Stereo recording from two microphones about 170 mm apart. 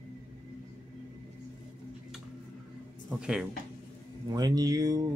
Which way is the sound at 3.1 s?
5° right (ahead or behind).